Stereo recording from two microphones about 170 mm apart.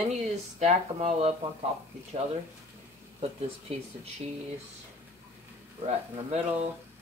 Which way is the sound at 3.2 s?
35° right (ahead or behind).